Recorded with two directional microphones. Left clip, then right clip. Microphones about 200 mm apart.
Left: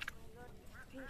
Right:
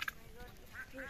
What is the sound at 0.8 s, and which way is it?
Quack, 30° left (ahead or behind).